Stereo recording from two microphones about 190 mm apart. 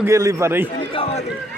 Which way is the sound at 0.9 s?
30° left (ahead or behind).